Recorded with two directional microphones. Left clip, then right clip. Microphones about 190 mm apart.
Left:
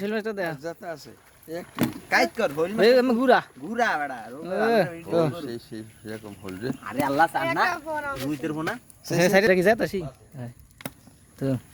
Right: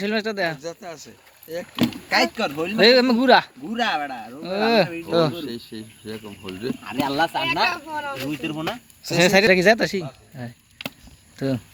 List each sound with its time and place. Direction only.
0.0 s speech: 5° left (ahead or behind)
0.6 s speech: 55° left (ahead or behind)
2.0 s speech: 25° left (ahead or behind)
2.7 s a man's voice: 5° left (ahead or behind)
3.7 s speech: 25° left (ahead or behind)
4.4 s a man's voice: 10° left (ahead or behind)
5.3 s speech: 60° left (ahead or behind)
6.9 s speech: 20° left (ahead or behind)
7.4 s speech: centre (ahead or behind)
8.4 s speech: 20° left (ahead or behind)
9.1 s a man's voice: 5° left (ahead or behind)